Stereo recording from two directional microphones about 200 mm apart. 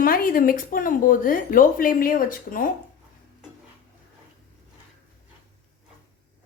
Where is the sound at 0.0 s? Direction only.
45° left (ahead or behind).